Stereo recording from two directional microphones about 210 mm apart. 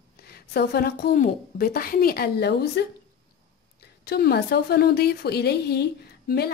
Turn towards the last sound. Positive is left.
turn(degrees=50)  # may be behind; listen again after turning